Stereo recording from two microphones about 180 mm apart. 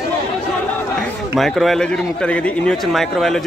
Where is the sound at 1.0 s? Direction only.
Centre (ahead or behind).